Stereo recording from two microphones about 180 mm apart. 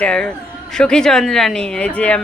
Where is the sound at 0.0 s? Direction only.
5° left (ahead or behind).